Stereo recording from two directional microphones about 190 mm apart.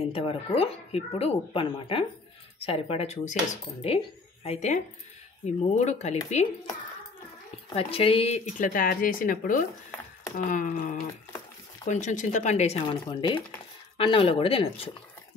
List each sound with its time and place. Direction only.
0.0 s speech: 30° left (ahead or behind)
7.7 s speech: 30° left (ahead or behind)